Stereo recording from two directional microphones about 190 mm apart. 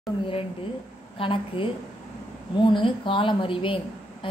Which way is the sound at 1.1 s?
25° left (ahead or behind).